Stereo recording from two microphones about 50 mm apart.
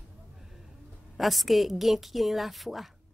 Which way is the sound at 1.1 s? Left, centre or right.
Centre.